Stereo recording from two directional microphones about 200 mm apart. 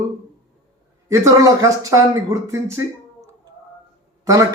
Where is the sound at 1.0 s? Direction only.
15° right (ahead or behind).